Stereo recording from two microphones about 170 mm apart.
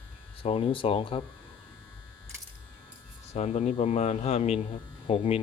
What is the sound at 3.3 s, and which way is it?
Speech, 40° left (ahead or behind).